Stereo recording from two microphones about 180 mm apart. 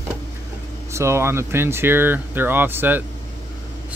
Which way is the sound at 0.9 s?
15° right (ahead or behind).